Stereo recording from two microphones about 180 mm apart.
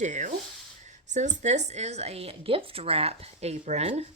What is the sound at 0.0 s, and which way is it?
A woman's voice, 45° right (ahead or behind).